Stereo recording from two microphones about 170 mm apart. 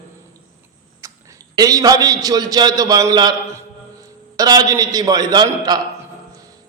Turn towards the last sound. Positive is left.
turn(degrees=-25)  # may be behind; listen again after turning